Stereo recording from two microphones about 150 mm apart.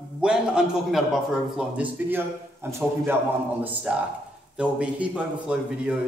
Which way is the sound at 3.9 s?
5° right (ahead or behind).